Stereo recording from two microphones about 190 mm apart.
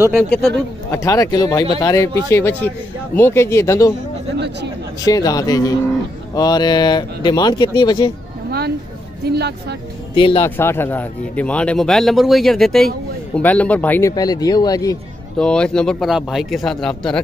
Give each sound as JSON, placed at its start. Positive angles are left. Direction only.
{"t": 0.1, "sound": "speech", "side_deg": 0}
{"t": 0.9, "sound": "speech", "side_deg": 20}
{"t": 5.0, "sound": "speech", "side_deg": 20}
{"t": 8.5, "sound": "a sound", "side_deg": -55}
{"t": 9.2, "sound": "speech", "side_deg": -60}
{"t": 10.1, "sound": "speech", "side_deg": 30}
{"t": 10.4, "sound": "speech", "side_deg": 10}
{"t": 15.3, "sound": "speech", "side_deg": 5}